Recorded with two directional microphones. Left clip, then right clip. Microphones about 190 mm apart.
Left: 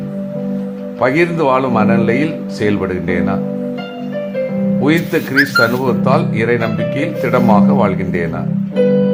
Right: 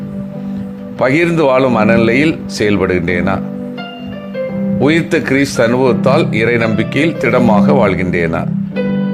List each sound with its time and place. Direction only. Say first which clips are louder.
0.9 s speech: right 2 dB; 20° right (ahead or behind)
4.8 s speech: right 3 dB; 20° right (ahead or behind)